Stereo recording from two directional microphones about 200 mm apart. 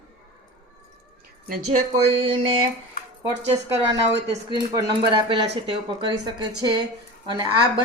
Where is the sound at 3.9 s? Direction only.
60° right (ahead or behind).